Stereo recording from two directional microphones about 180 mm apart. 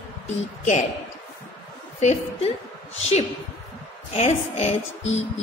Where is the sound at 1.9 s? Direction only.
40° left (ahead or behind).